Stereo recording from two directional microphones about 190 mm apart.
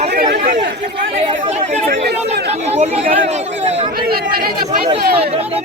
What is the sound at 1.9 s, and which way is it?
Speech, 60° right (ahead or behind).